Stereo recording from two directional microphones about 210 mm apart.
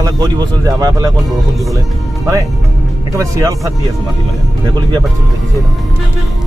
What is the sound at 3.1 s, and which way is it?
Speech, 15° right (ahead or behind).